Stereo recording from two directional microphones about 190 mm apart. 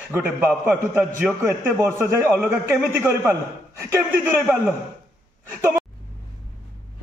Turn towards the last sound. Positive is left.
turn(degrees=-10)  # may be behind; listen again after turning